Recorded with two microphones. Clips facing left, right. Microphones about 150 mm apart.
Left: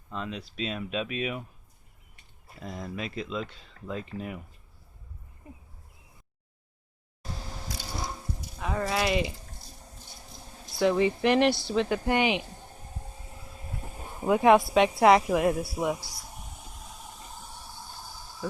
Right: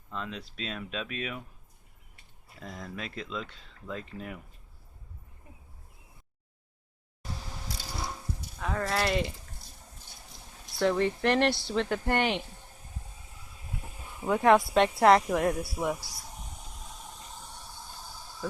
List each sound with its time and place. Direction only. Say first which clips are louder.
0.1 s speech: left 2 dB; 5° left (ahead or behind)
2.6 s speech: left 4 dB; 10° left (ahead or behind)
8.5 s speech: left 1 dB; 10° left (ahead or behind)
10.8 s speech: left 3 dB; 5° left (ahead or behind)
13.9 s a sound: left 4 dB; 45° left (ahead or behind)
14.3 s speech: left 2 dB; 10° left (ahead or behind)
16.2 s train: left 1 dB; 5° left (ahead or behind)